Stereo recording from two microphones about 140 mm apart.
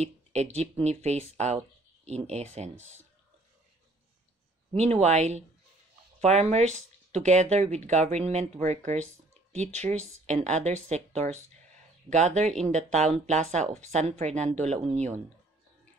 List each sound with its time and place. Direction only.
0.0 s speech: 50° right (ahead or behind)
4.7 s speech: 50° right (ahead or behind)